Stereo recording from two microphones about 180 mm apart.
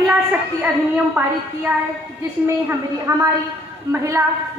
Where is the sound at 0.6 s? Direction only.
10° right (ahead or behind).